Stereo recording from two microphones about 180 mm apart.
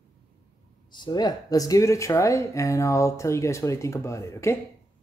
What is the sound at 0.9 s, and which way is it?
Speech, 25° left (ahead or behind).